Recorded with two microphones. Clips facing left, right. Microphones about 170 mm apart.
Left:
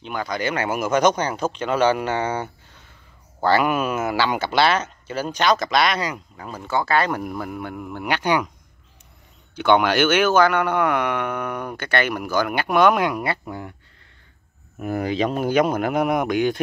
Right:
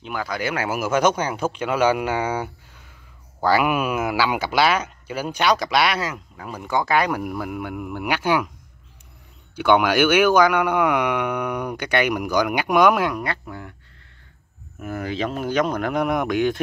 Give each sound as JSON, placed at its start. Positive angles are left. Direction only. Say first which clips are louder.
{"t": 0.0, "sound": "speech", "louder": "left 1 dB", "side_deg": -5}
{"t": 6.5, "sound": "speech", "louder": "even", "side_deg": -15}
{"t": 9.6, "sound": "speech", "louder": "even", "side_deg": -10}
{"t": 13.1, "sound": "speech", "louder": "left 2 dB", "side_deg": 10}
{"t": 14.8, "sound": "speech", "louder": "left 4 dB", "side_deg": 15}